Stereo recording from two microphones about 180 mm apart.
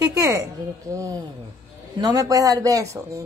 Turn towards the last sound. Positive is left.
turn(degrees=-15)  # may be behind; listen again after turning